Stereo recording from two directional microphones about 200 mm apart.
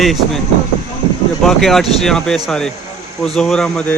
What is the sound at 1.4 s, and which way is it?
Speech, centre (ahead or behind).